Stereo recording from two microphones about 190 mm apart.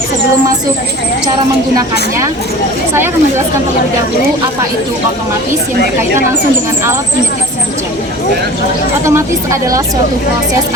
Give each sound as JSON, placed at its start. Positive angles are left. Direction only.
{"t": 1.7, "sound": "a woman's voice", "side_deg": -15}
{"t": 9.0, "sound": "a woman's voice", "side_deg": -15}